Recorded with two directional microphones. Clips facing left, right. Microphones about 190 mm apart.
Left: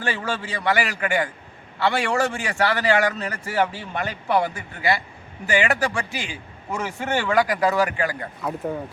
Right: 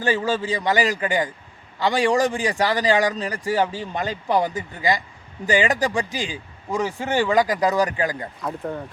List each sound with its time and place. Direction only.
0.0 s a man's voice: 15° right (ahead or behind)
8.4 s speech: 5° left (ahead or behind)